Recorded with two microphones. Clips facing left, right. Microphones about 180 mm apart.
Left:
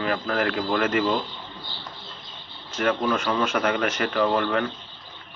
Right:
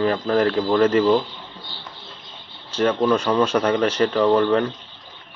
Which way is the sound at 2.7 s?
30° right (ahead or behind).